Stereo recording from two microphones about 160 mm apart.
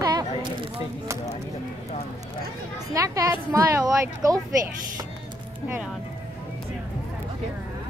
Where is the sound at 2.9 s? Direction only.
20° right (ahead or behind).